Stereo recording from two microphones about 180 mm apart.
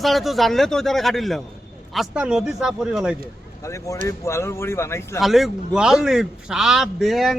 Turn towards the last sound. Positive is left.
turn(degrees=0)  # may be behind; listen again after turning